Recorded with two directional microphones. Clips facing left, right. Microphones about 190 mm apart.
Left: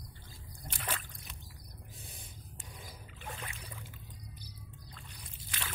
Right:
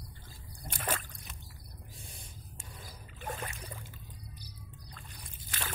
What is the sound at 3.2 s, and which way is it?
Boat, 45° right (ahead or behind).